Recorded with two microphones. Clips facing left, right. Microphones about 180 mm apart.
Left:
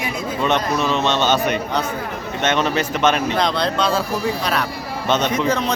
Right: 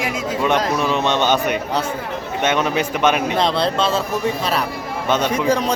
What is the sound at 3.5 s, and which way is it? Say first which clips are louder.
Speech: right 2 dB; 30° right (ahead or behind).